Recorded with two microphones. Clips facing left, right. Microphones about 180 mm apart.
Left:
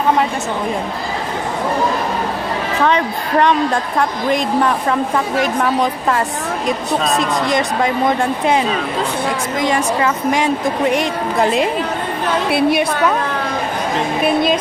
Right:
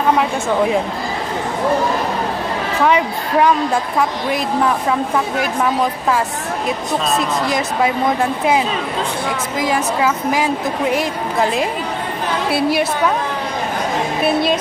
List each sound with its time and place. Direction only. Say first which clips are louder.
2.8 s a woman's voice: right 1 dB; 5° right (ahead or behind)
5.4 s a woman's voice: left 3 dB; centre (ahead or behind)
12.4 s a woman's voice: left 2 dB; 55° left (ahead or behind)